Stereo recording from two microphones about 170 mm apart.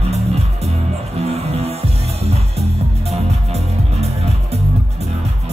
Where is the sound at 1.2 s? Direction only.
40° right (ahead or behind).